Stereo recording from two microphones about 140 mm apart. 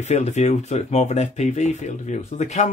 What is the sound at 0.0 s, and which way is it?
Speech, 55° left (ahead or behind).